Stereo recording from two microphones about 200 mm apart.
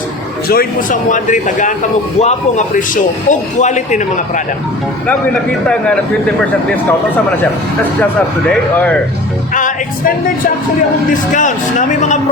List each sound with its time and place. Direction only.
0.4 s a man's voice: 50° left (ahead or behind)
5.6 s speech: 5° left (ahead or behind)
8.4 s speech: 5° left (ahead or behind)
11.3 s a man's voice: 40° left (ahead or behind)